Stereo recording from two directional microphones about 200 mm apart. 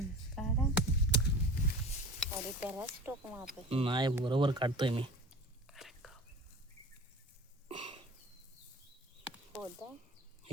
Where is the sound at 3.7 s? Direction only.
25° right (ahead or behind).